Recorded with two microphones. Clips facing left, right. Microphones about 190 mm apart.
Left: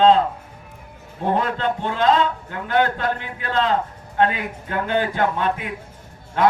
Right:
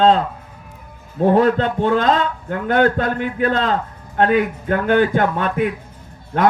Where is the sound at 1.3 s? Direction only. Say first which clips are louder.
Right 6 dB; 45° right (ahead or behind).